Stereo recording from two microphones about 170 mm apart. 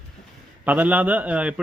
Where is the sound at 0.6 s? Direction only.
10° right (ahead or behind).